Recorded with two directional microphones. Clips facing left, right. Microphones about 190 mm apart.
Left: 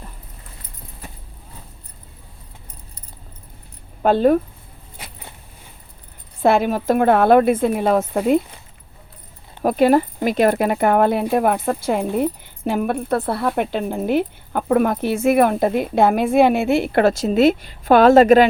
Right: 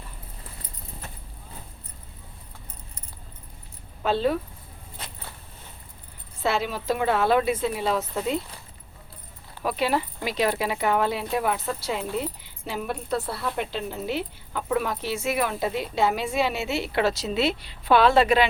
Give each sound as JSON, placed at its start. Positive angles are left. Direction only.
{"t": 4.0, "sound": "speech", "side_deg": 50}
{"t": 4.9, "sound": "vehicle", "side_deg": 10}
{"t": 6.4, "sound": "speech", "side_deg": 55}
{"t": 9.6, "sound": "speech", "side_deg": 50}